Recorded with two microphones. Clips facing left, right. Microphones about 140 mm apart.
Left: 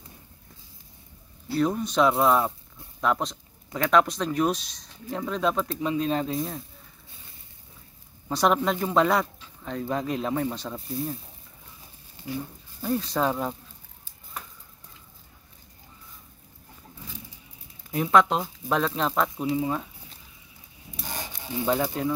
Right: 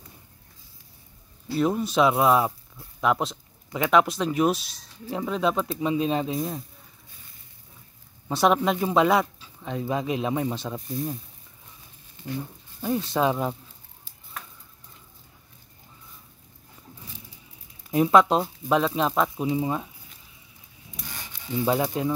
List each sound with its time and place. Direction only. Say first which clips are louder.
1.6 s speech: right 1 dB; 10° right (ahead or behind)
8.3 s speech: right 2 dB; centre (ahead or behind)
12.2 s a sound: right 1 dB; 35° left (ahead or behind)
12.8 s speech: right 2 dB; centre (ahead or behind)
17.9 s speech: right 3 dB; 20° right (ahead or behind)
21.0 s a sound: left 4 dB; 30° left (ahead or behind)
21.6 s speech: right 1 dB; 15° right (ahead or behind)